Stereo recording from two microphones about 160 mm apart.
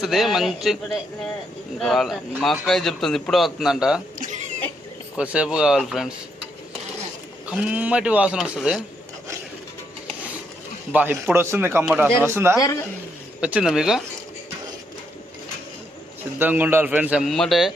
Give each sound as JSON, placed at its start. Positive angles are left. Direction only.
{"t": 0.0, "sound": "a man's voice", "side_deg": 0}
{"t": 4.2, "sound": "a sound", "side_deg": -50}
{"t": 5.1, "sound": "a man's voice", "side_deg": -5}
{"t": 10.9, "sound": "a man's voice", "side_deg": -10}
{"t": 16.4, "sound": "a man's voice", "side_deg": -10}